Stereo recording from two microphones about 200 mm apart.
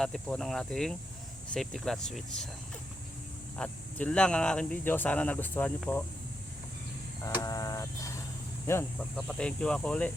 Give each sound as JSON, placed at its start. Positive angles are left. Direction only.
{"t": 0.0, "sound": "speech", "side_deg": 5}
{"t": 3.6, "sound": "speech", "side_deg": 5}
{"t": 7.4, "sound": "speech", "side_deg": 15}